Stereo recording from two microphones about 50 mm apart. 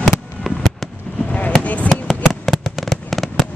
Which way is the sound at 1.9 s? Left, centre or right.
Centre.